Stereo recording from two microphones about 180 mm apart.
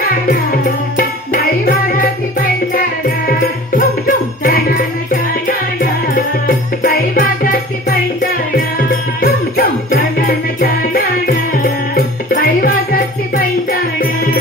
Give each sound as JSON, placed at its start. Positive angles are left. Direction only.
{"t": 0.1, "sound": "music", "side_deg": 55}
{"t": 4.4, "sound": "music", "side_deg": 55}